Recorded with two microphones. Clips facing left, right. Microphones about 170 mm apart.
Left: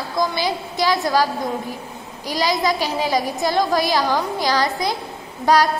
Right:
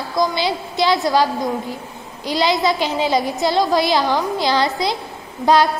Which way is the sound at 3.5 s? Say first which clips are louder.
Right 2 dB; 45° left (ahead or behind).